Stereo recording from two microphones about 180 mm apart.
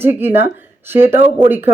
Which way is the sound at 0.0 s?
10° right (ahead or behind).